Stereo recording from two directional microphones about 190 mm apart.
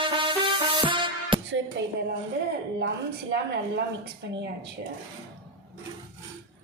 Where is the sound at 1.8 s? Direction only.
70° right (ahead or behind).